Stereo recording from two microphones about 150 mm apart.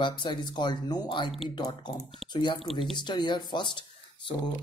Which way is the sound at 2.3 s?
30° left (ahead or behind).